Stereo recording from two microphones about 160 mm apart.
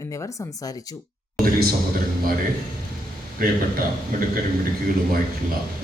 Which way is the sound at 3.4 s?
65° right (ahead or behind).